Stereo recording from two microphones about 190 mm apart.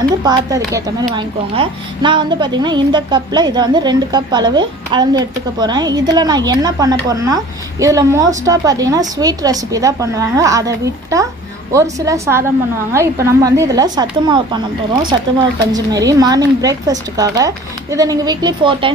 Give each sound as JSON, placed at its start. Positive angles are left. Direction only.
{"t": 0.2, "sound": "a woman's voice", "side_deg": -20}
{"t": 15.7, "sound": "a woman's voice", "side_deg": -20}